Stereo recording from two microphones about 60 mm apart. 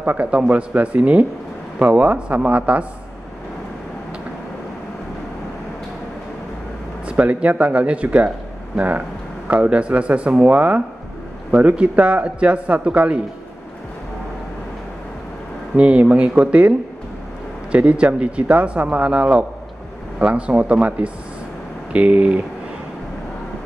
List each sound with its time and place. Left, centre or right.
0.0 s speech: right
0.3 s speech: centre
7.1 s speech: right
15.7 s speech: centre